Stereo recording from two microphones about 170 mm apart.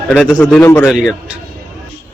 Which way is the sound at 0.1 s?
10° left (ahead or behind).